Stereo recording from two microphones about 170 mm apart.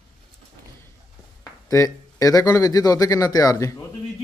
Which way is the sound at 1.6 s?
20° left (ahead or behind).